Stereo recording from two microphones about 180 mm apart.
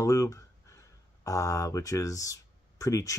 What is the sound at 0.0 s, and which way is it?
Speech, 15° left (ahead or behind).